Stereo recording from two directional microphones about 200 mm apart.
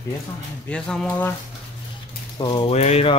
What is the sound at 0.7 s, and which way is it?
Speech, 5° left (ahead or behind).